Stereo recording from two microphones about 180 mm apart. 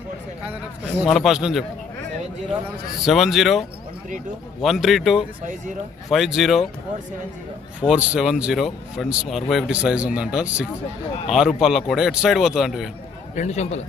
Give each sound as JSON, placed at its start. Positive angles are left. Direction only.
{"t": 1.0, "sound": "speech", "side_deg": 0}
{"t": 3.0, "sound": "speech", "side_deg": 0}
{"t": 7.8, "sound": "speech", "side_deg": -5}
{"t": 13.3, "sound": "a man's voice", "side_deg": 40}